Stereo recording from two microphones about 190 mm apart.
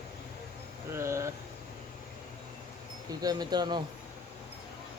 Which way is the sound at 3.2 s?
20° right (ahead or behind).